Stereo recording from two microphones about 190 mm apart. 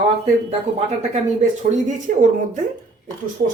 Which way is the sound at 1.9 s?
40° right (ahead or behind).